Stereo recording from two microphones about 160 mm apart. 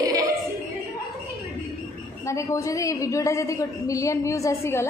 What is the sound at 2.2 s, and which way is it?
A woman's voice, 20° left (ahead or behind).